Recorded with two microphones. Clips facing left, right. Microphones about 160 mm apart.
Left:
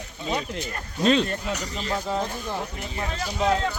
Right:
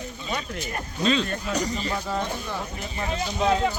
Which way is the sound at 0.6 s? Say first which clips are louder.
Left 2 dB; 55° left (ahead or behind).